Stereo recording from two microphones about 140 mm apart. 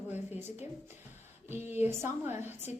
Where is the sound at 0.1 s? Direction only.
15° right (ahead or behind).